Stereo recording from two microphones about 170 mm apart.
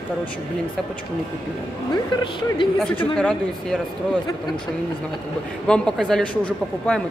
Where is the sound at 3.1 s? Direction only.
5° left (ahead or behind).